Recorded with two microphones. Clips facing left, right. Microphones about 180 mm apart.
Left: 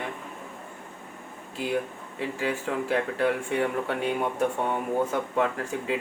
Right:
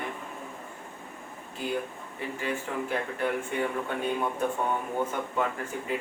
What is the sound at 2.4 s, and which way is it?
Speech, 75° left (ahead or behind).